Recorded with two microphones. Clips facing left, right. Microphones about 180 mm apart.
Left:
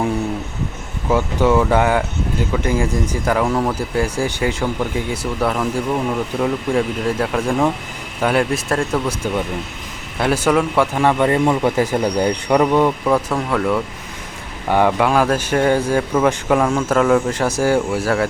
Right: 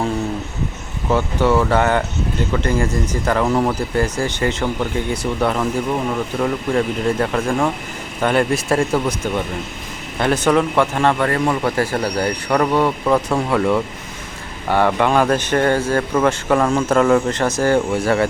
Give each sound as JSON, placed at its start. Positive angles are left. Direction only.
{"t": 1.1, "sound": "speech", "side_deg": 10}
{"t": 3.4, "sound": "speech", "side_deg": -5}
{"t": 3.8, "sound": "speech", "side_deg": 10}
{"t": 10.2, "sound": "speech", "side_deg": 5}
{"t": 13.3, "sound": "speech", "side_deg": -5}
{"t": 14.7, "sound": "speech", "side_deg": 15}